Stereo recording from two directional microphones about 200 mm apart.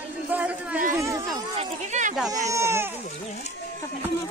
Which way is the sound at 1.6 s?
35° right (ahead or behind).